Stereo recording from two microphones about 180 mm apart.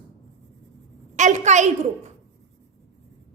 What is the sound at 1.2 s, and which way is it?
Speech, 40° right (ahead or behind).